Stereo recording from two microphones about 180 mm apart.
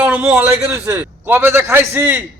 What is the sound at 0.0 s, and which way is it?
A man's voice, 10° right (ahead or behind).